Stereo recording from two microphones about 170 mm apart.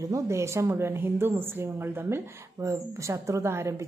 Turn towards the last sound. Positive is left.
turn(degrees=-15)  # may be behind; listen again after turning